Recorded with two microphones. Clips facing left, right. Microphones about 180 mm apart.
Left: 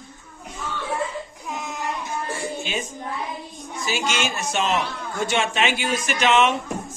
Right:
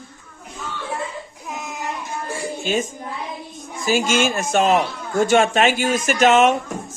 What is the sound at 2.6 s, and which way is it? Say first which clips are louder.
A man's voice: right 6 dB; 45° right (ahead or behind).